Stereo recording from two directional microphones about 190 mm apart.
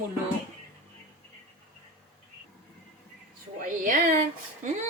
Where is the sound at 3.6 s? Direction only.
45° right (ahead or behind).